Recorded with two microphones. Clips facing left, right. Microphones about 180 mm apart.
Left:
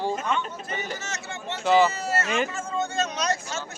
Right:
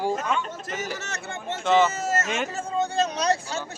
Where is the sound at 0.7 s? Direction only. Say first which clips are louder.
Right 1 dB; 75° right (ahead or behind); by 3.6 s 35° right (ahead or behind).